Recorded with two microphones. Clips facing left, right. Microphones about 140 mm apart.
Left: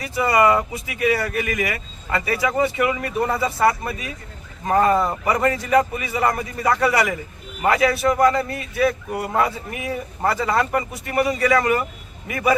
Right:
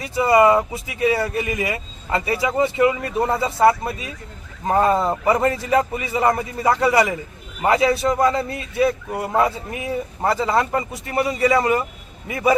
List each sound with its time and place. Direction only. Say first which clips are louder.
0.0 s a man's voice: right 3 dB; 25° right (ahead or behind)